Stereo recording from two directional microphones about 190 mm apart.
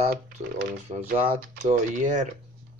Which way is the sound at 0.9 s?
35° right (ahead or behind).